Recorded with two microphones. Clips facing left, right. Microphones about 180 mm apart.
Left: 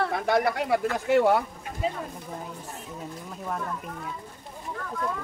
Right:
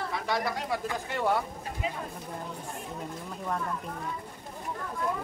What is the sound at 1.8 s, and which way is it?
Speech, 35° left (ahead or behind).